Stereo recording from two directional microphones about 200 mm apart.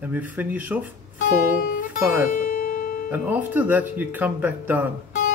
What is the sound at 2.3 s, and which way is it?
Music, 40° left (ahead or behind).